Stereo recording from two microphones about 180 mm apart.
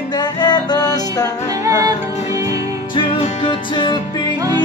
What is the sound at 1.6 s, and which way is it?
Music, 20° right (ahead or behind).